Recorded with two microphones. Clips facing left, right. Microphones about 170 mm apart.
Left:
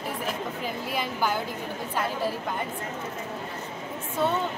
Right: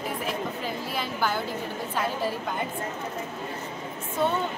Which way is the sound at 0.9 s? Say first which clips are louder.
Left 1 dB; 15° left (ahead or behind).